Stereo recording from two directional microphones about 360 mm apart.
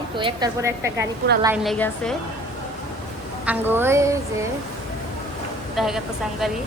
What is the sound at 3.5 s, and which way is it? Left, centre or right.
Speech, centre.